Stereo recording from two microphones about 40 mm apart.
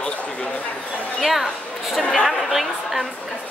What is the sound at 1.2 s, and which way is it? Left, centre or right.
A woman's voice, centre.